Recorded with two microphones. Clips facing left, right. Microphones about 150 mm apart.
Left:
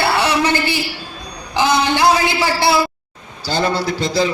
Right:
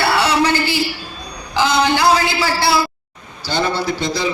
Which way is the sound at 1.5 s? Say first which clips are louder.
Even; 20° left (ahead or behind).